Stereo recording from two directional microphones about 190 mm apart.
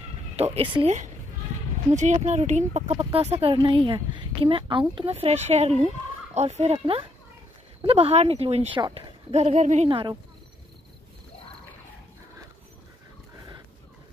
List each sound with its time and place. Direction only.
0.4 s speech: 30° right (ahead or behind)
9.8 s speech: 25° right (ahead or behind)